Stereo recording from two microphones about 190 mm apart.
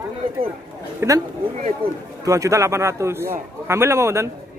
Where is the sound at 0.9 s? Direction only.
15° right (ahead or behind).